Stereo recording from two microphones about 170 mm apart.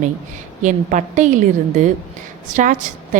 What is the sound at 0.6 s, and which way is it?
A woman's voice, 45° right (ahead or behind).